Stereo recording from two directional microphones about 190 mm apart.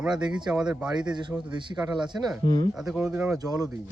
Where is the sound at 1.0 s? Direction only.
25° right (ahead or behind).